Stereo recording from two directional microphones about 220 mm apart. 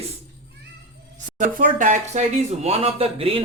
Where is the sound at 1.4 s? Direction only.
35° right (ahead or behind).